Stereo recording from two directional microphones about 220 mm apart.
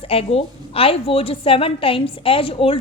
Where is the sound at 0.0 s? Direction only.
25° left (ahead or behind).